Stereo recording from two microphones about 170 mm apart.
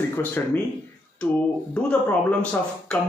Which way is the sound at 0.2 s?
10° left (ahead or behind).